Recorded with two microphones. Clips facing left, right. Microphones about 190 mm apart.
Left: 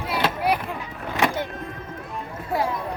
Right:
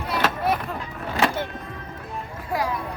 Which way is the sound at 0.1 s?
15° left (ahead or behind).